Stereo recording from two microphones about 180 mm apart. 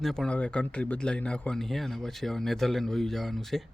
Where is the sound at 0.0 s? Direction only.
Centre (ahead or behind).